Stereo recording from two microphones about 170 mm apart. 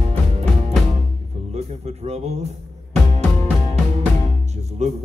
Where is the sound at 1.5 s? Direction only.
40° right (ahead or behind).